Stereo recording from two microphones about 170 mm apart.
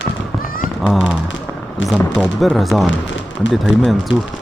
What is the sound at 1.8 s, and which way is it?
Speech, 90° left.